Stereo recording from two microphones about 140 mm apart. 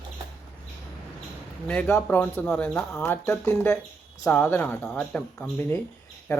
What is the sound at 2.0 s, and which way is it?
Speech, 15° left (ahead or behind).